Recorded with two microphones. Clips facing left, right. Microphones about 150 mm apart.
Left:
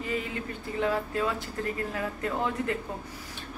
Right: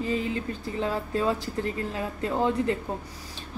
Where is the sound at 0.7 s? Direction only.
30° right (ahead or behind).